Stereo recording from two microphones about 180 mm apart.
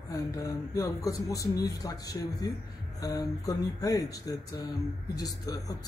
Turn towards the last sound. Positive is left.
turn(degrees=20)  # may be behind; listen again after turning